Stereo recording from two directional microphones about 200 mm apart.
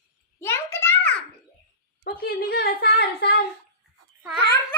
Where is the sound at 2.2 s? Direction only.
50° left (ahead or behind).